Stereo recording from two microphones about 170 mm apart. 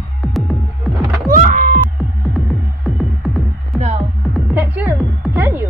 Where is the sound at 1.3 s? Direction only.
50° right (ahead or behind).